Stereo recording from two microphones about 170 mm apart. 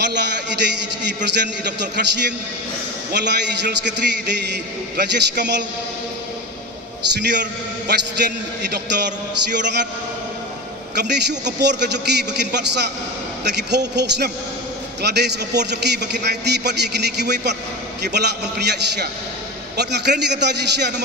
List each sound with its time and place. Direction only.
0.0 s a man's voice: 90° right
7.2 s a man's voice: 90° right
8.7 s a man's voice: 90° right
11.0 s a man's voice: 80° right